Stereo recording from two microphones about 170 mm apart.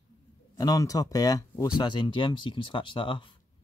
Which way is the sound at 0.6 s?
20° left (ahead or behind).